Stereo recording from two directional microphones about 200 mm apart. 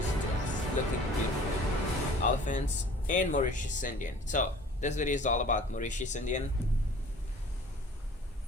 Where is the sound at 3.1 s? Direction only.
40° left (ahead or behind).